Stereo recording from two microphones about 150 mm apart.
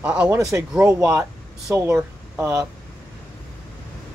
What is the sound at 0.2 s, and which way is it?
Speech, 20° right (ahead or behind).